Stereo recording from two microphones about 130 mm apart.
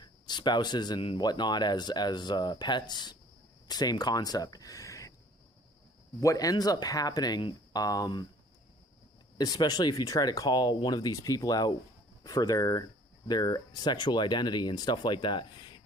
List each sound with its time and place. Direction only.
0.0 s speech: 35° left (ahead or behind)
6.1 s speech: 25° left (ahead or behind)
9.4 s speech: 30° left (ahead or behind)